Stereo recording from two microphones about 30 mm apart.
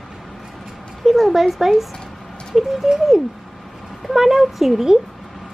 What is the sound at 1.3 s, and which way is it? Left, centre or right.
Speech, centre.